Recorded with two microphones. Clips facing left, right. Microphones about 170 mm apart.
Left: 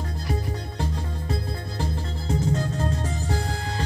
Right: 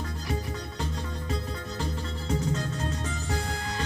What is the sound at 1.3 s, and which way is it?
Music, 35° left (ahead or behind).